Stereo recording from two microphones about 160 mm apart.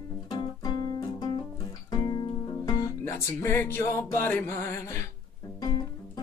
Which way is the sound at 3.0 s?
15° left (ahead or behind).